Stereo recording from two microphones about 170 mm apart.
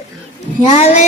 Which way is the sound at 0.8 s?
40° left (ahead or behind).